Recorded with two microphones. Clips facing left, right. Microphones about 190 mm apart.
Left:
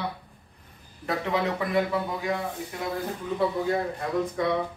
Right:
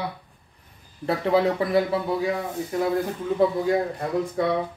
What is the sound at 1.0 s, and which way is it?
Speech, 30° right (ahead or behind).